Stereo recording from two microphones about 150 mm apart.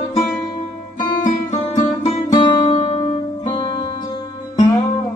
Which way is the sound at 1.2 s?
55° left (ahead or behind).